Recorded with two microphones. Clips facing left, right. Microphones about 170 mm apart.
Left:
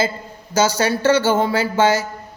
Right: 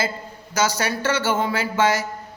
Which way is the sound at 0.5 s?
30° left (ahead or behind).